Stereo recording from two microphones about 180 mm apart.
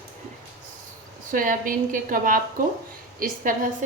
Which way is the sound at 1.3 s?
50° right (ahead or behind).